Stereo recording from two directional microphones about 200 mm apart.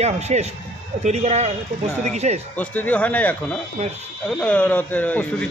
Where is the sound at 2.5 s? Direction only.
10° left (ahead or behind).